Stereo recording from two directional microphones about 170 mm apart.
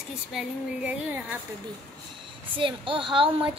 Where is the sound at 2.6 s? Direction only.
30° right (ahead or behind).